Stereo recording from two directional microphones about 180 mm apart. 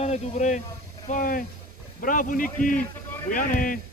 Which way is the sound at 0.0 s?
40° left (ahead or behind).